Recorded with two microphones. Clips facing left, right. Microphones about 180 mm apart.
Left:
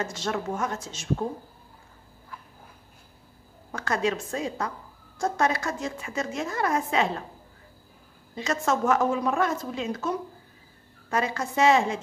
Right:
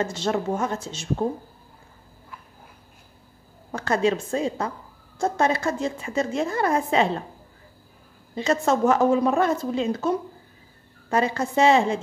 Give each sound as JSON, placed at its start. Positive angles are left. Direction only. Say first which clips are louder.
{"t": 0.0, "sound": "a woman's voice", "louder": "right 5 dB", "side_deg": -30}
{"t": 3.7, "sound": "a woman's voice", "louder": "right 5 dB", "side_deg": -30}
{"t": 8.4, "sound": "a woman's voice", "louder": "right 5 dB", "side_deg": -30}